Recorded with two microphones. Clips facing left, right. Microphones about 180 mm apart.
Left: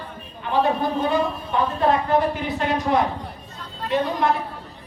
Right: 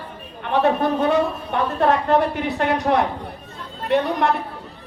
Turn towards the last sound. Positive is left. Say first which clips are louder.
# right 2 dB
turn(degrees=-65)  # may be behind; listen again after turning